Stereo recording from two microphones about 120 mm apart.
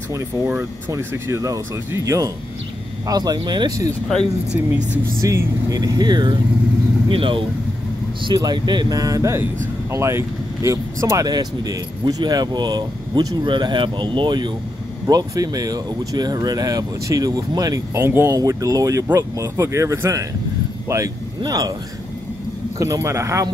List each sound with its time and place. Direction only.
0.5 s speech: 20° right (ahead or behind); by 3.8 s 35° right (ahead or behind)
4.6 s speech: 15° right (ahead or behind); by 21.7 s 35° right (ahead or behind)
22.8 s speech: 25° right (ahead or behind)